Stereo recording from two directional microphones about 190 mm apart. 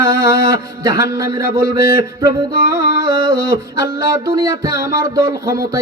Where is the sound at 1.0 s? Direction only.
20° right (ahead or behind).